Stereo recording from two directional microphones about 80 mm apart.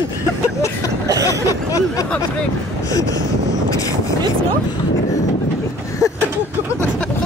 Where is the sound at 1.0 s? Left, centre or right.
Right.